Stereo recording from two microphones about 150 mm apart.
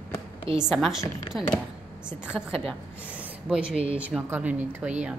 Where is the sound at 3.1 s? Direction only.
10° right (ahead or behind).